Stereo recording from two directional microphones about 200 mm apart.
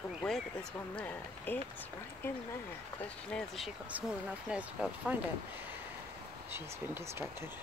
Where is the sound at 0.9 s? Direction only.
10° left (ahead or behind).